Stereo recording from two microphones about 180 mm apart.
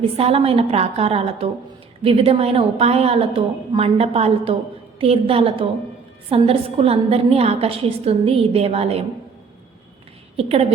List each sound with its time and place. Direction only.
0.2 s a woman's voice: 35° right (ahead or behind)
10.3 s a woman's voice: 35° right (ahead or behind)